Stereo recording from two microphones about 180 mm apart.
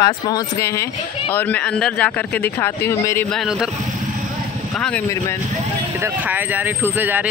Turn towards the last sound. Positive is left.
turn(degrees=-10)  # may be behind; listen again after turning